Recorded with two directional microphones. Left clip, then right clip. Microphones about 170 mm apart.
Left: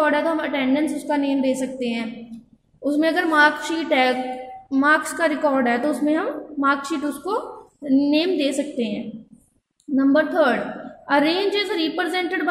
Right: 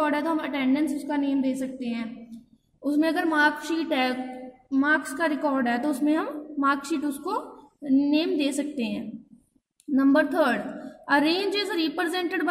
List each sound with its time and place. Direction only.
0.0 s a woman's voice: 15° right (ahead or behind)